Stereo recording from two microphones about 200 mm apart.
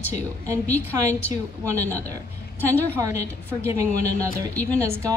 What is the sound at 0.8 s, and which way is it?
Speech, 15° right (ahead or behind).